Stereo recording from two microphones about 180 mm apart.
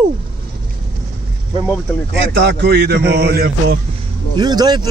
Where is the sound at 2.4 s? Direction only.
70° right (ahead or behind).